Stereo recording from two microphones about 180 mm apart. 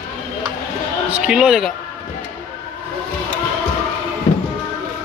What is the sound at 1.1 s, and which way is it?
Speech, 5° right (ahead or behind).